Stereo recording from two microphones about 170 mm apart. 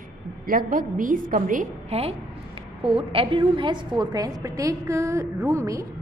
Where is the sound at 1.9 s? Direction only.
35° right (ahead or behind).